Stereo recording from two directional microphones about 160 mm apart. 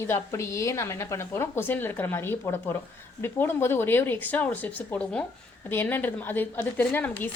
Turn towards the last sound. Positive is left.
turn(degrees=10)  # may be behind; listen again after turning